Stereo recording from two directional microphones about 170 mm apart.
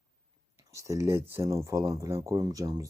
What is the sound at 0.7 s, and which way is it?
Speech, 20° right (ahead or behind).